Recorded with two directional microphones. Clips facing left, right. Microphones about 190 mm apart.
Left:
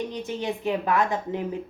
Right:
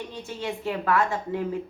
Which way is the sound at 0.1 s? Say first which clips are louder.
Left 3 dB; 20° left (ahead or behind).